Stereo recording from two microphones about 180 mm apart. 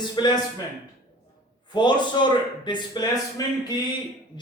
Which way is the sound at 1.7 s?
25° left (ahead or behind).